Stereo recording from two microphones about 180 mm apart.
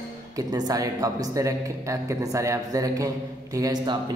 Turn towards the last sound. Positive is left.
turn(degrees=-20)  # may be behind; listen again after turning